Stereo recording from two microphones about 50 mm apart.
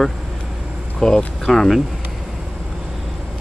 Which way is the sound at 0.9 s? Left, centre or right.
Centre.